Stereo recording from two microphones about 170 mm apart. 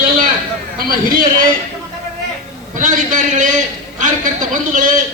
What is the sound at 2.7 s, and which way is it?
A man's voice, 50° right (ahead or behind).